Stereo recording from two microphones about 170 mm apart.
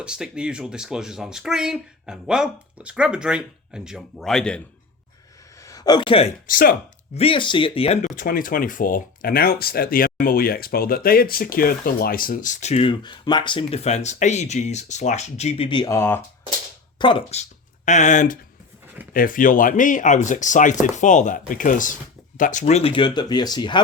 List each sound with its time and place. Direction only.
0.0 s speech: 5° right (ahead or behind)
5.5 s a sound: 20° left (ahead or behind)
6.5 s speech: 55° left (ahead or behind)
7.1 s speech: 35° left (ahead or behind)
8.0 s speech: 50° left (ahead or behind); by 16.0 s 25° left (ahead or behind)
16.0 s speech: 15° left (ahead or behind)
17.0 s speech: 30° left (ahead or behind)
17.8 s speech: 45° left (ahead or behind); by 23.8 s 25° left (ahead or behind)